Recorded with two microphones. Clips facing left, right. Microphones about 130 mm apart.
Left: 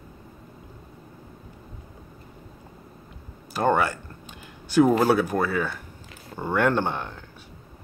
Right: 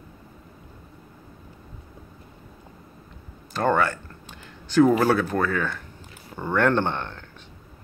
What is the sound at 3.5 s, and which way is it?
Speech, 10° left (ahead or behind).